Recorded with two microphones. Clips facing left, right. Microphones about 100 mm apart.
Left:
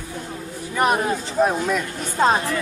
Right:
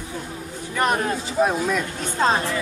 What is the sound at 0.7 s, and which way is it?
Speech, 5° left (ahead or behind).